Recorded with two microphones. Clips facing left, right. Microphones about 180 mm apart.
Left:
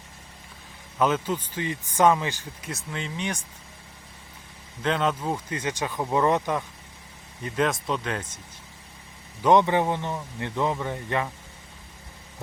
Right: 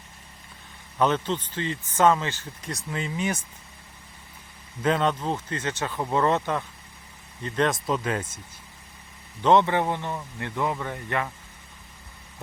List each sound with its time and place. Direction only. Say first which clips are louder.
0.9 s speech: even; 5° left (ahead or behind)
4.8 s speech: right 2 dB; centre (ahead or behind)
9.4 s speech: left 1 dB; 15° left (ahead or behind)